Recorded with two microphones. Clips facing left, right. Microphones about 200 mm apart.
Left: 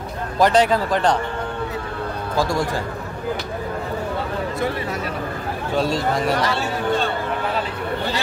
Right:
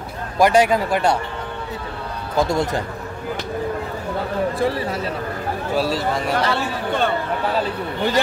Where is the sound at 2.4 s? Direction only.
20° right (ahead or behind).